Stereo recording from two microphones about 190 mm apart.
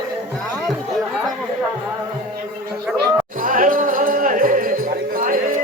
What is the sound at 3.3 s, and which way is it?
Music, 45° right (ahead or behind).